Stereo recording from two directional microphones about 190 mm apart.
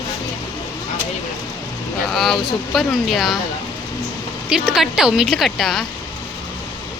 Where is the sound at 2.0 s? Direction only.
Centre (ahead or behind).